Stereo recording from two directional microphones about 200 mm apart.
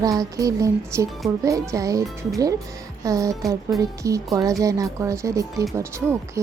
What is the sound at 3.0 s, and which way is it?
Music, 15° right (ahead or behind).